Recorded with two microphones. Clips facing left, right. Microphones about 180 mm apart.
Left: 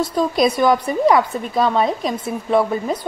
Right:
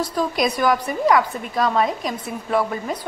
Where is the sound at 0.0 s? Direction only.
25° left (ahead or behind).